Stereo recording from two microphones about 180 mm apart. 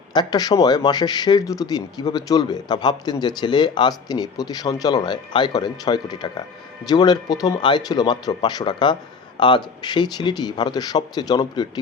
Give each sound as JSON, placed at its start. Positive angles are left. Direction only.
{"t": 0.1, "sound": "speech", "side_deg": 20}